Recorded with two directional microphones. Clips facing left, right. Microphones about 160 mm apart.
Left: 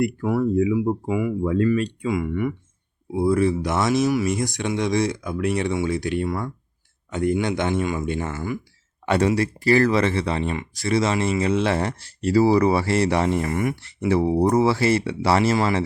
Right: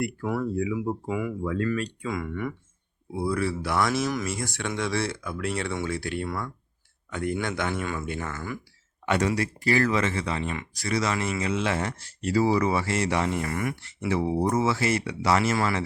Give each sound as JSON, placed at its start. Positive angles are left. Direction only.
{"t": 0.0, "sound": "speech", "side_deg": 15}
{"t": 1.4, "sound": "speech", "side_deg": 25}
{"t": 14.1, "sound": "speech", "side_deg": 35}